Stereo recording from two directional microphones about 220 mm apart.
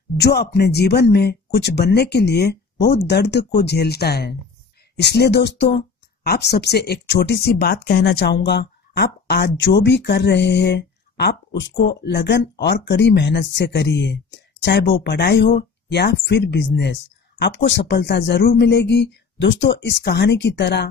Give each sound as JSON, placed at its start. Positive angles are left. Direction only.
{"t": 0.2, "sound": "speech", "side_deg": 45}